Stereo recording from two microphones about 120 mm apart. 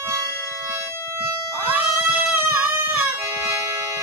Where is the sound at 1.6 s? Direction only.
15° right (ahead or behind).